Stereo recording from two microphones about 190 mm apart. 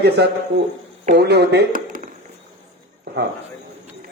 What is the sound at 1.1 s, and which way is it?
Speech, 60° right (ahead or behind).